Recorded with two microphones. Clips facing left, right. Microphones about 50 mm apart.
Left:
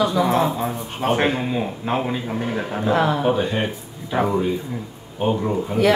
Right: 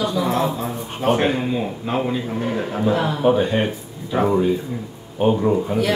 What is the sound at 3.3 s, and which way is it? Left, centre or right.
Speech, centre.